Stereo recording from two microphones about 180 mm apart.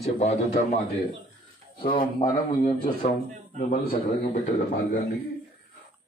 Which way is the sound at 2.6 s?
40° left (ahead or behind).